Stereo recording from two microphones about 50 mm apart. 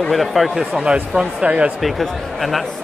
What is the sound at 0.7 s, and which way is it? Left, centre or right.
Speech, centre.